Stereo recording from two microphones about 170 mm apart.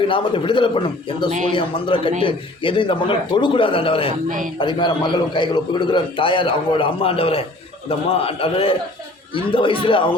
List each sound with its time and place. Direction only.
0.1 s a man's voice: 30° left (ahead or behind)